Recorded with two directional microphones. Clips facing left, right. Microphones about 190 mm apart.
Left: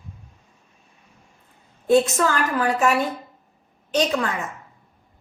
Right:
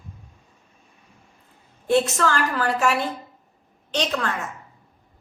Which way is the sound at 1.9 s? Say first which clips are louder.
Left 2 dB; 15° left (ahead or behind).